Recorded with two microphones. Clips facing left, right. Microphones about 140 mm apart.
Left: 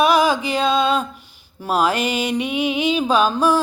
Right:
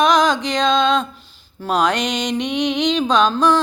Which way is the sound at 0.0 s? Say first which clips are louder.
Even; 10° left (ahead or behind).